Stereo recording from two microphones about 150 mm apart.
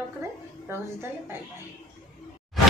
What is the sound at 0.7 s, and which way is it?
Speech, 15° right (ahead or behind).